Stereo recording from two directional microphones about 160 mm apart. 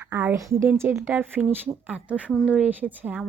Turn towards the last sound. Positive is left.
turn(degrees=-10)  # may be behind; listen again after turning